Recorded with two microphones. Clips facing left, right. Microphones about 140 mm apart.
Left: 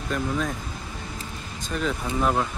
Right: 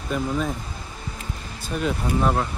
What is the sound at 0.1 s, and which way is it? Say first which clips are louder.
Speech: right 2 dB; 5° right (ahead or behind).